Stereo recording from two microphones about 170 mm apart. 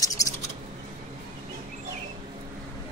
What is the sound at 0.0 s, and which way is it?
Bird, 20° left (ahead or behind).